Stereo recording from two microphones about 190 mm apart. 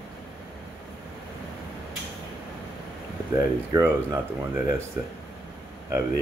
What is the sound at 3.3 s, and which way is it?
Speech, 15° right (ahead or behind).